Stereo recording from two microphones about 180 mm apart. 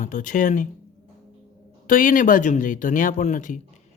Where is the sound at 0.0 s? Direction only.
45° left (ahead or behind).